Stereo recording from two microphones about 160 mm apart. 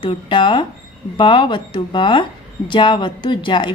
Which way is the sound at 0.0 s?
30° left (ahead or behind).